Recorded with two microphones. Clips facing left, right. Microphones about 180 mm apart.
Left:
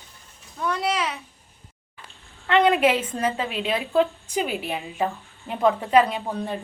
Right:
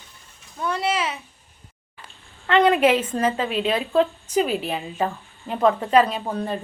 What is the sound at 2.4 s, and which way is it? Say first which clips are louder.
Speech: right 1 dB; 20° left (ahead or behind).